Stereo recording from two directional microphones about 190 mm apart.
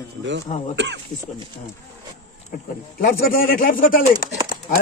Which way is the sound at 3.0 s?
50° left (ahead or behind).